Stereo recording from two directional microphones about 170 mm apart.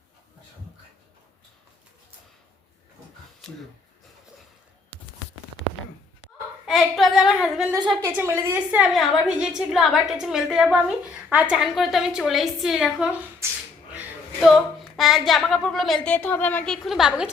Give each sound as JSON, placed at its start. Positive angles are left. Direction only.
{"t": 6.7, "sound": "a woman's voice", "side_deg": 0}
{"t": 8.0, "sound": "a woman's voice", "side_deg": -15}
{"t": 13.4, "sound": "a sound", "side_deg": -15}
{"t": 14.4, "sound": "a woman's voice", "side_deg": 0}